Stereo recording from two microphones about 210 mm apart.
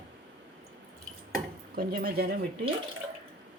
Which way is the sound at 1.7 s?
45° right (ahead or behind).